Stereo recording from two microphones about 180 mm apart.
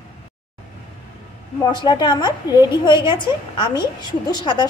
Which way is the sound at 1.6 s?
25° left (ahead or behind).